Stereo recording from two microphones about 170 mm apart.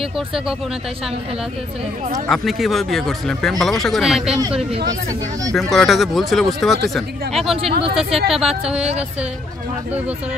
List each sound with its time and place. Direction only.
2.2 s speech: centre (ahead or behind)
5.5 s speech: centre (ahead or behind)
7.8 s speech: 35° right (ahead or behind)
8.3 s speech: 5° right (ahead or behind)